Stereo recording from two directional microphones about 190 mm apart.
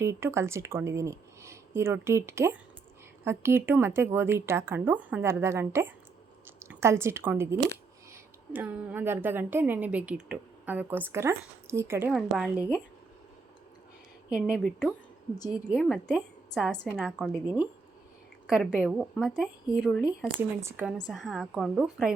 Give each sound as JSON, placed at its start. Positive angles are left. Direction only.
{"t": 0.0, "sound": "a woman's voice", "side_deg": -15}
{"t": 12.1, "sound": "speech", "side_deg": -5}
{"t": 14.3, "sound": "speech", "side_deg": -5}
{"t": 18.4, "sound": "speech", "side_deg": 0}
{"t": 21.1, "sound": "speech", "side_deg": 0}